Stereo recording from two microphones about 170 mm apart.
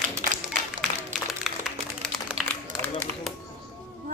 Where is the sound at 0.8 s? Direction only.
45° right (ahead or behind).